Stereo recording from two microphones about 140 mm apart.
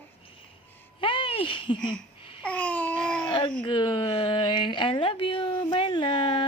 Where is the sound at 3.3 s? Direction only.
35° left (ahead or behind).